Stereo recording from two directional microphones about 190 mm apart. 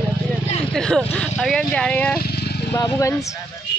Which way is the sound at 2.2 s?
60° left (ahead or behind).